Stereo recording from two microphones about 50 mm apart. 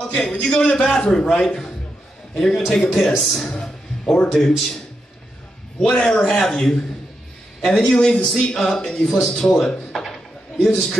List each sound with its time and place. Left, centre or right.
0.1 s a man's voice: centre
1.4 s a man's voice: centre
3.5 s music: centre
4.5 s a man's voice: centre
5.9 s a man's voice: centre